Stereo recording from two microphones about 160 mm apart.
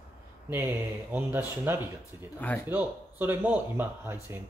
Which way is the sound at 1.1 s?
15° right (ahead or behind).